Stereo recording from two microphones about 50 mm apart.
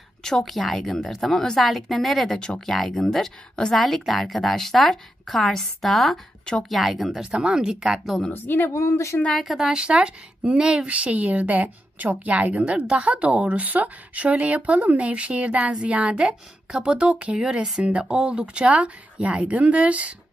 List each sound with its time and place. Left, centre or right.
0.2 s a woman's voice: centre
7.2 s speech: centre
8.3 s a woman's voice: left
8.7 s a woman's voice: left
9.3 s speech: centre; by 20.2 s right